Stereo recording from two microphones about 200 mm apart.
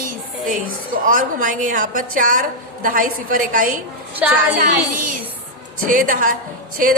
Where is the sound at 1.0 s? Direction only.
45° right (ahead or behind).